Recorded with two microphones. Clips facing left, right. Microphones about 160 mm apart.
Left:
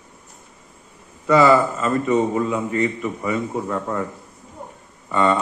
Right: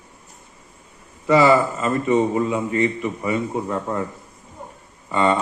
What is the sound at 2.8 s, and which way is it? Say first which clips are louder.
A man's voice: right 1 dB; 15° right (ahead or behind).